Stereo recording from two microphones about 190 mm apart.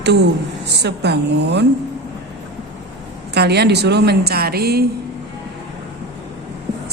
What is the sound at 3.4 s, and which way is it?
A woman's voice, 60° right (ahead or behind).